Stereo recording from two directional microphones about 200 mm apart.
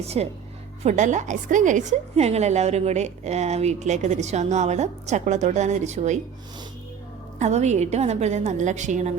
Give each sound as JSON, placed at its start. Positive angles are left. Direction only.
{"t": 0.0, "sound": "a woman's voice", "side_deg": -30}
{"t": 7.3, "sound": "a woman's voice", "side_deg": -35}